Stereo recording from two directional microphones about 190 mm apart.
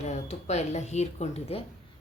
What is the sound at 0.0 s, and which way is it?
Speech, 35° left (ahead or behind).